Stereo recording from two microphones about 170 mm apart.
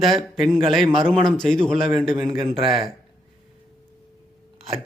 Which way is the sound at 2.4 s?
30° right (ahead or behind).